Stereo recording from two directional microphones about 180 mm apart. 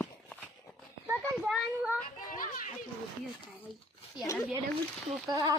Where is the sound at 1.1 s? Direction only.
5° right (ahead or behind).